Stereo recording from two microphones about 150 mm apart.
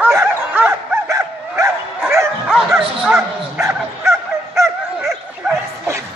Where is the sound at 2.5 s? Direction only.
Centre (ahead or behind).